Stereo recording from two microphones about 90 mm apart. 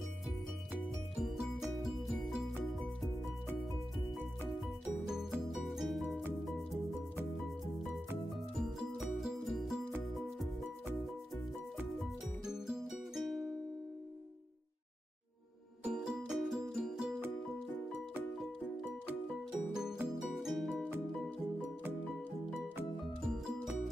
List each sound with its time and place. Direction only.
1.8 s music: centre (ahead or behind)
4.5 s music: 5° right (ahead or behind)
8.5 s music: 5° right (ahead or behind)
12.0 s music: 5° right (ahead or behind)
15.8 s music: 10° right (ahead or behind)
20.4 s music: 5° right (ahead or behind)
23.2 s music: 5° right (ahead or behind)